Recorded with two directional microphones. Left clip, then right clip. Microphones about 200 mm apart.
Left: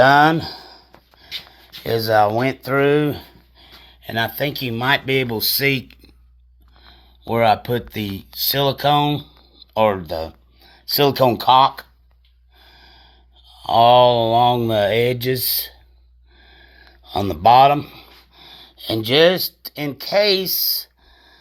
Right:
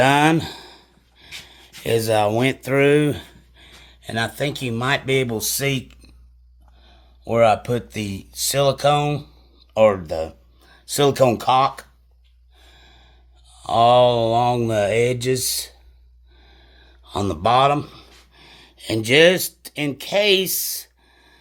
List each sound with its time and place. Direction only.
0.0 s speech: 15° right (ahead or behind)
0.7 s a sound: 15° right (ahead or behind)
1.8 s speech: 15° right (ahead or behind); by 5.8 s centre (ahead or behind)
7.3 s speech: centre (ahead or behind)
12.6 s gasp: 5° right (ahead or behind)
13.6 s speech: centre (ahead or behind)
17.1 s a sound: 5° right (ahead or behind)
18.9 s speech: 10° right (ahead or behind)